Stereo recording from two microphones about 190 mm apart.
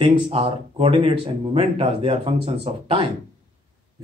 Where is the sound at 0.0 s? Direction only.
30° right (ahead or behind).